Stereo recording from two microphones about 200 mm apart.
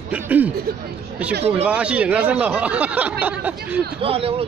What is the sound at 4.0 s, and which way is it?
Speech, 30° right (ahead or behind).